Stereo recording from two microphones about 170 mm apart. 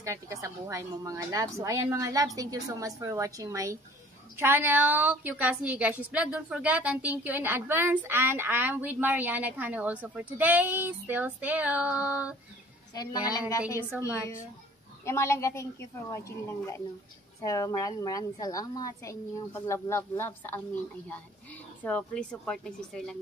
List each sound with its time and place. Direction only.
0.0 s a woman's voice: 15° right (ahead or behind)
12.9 s a woman's voice: 20° left (ahead or behind)
21.8 s a woman's voice: 5° left (ahead or behind)